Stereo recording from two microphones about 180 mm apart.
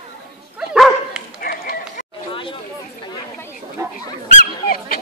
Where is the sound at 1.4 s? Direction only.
55° left (ahead or behind).